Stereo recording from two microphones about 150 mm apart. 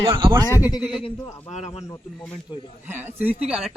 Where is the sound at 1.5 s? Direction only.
45° left (ahead or behind).